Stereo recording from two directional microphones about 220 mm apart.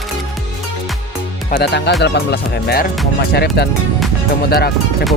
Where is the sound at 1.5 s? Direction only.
50° left (ahead or behind).